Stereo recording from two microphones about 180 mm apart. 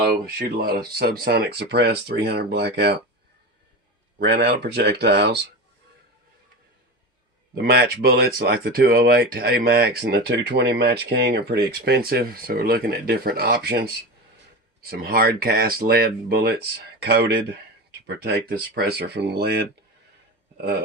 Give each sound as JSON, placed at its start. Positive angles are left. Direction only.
{"t": 0.3, "sound": "speech", "side_deg": -60}
{"t": 4.2, "sound": "speech", "side_deg": -65}
{"t": 7.5, "sound": "speech", "side_deg": -60}